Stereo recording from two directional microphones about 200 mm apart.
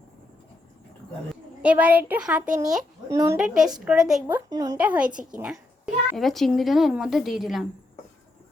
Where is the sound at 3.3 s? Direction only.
5° right (ahead or behind).